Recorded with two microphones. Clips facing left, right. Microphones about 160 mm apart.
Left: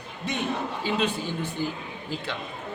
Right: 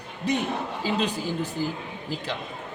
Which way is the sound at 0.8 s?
40° right (ahead or behind).